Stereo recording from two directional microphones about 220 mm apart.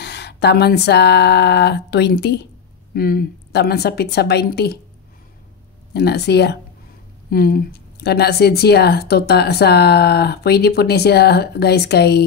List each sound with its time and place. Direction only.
0.0 s speech: 50° left (ahead or behind)
5.9 s speech: 45° left (ahead or behind)